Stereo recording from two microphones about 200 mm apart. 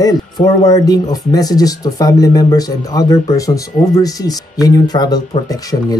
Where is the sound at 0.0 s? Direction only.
20° left (ahead or behind).